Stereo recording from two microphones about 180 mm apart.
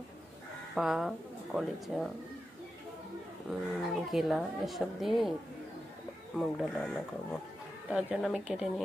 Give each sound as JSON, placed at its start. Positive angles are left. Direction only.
{"t": 0.7, "sound": "speech", "side_deg": 0}
{"t": 3.4, "sound": "speech", "side_deg": 0}
{"t": 6.3, "sound": "speech", "side_deg": 0}